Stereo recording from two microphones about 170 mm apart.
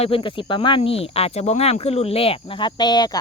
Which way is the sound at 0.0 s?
30° left (ahead or behind).